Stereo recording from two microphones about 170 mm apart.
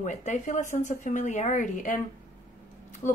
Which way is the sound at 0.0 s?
45° left (ahead or behind).